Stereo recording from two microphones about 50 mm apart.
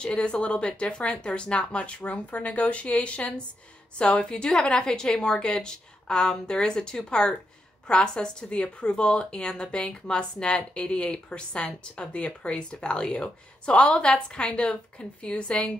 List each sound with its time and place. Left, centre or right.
0.0 s a woman's voice: centre